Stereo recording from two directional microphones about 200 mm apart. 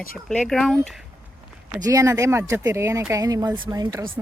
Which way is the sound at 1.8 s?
15° right (ahead or behind).